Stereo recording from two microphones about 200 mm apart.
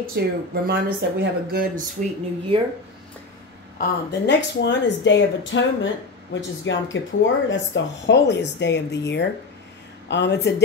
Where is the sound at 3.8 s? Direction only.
60° left (ahead or behind).